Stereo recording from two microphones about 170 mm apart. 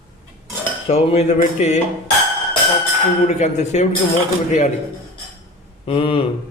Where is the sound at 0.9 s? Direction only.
40° left (ahead or behind).